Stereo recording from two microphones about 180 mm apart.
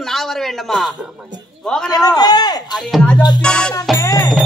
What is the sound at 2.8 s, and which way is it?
Speech, 5° left (ahead or behind).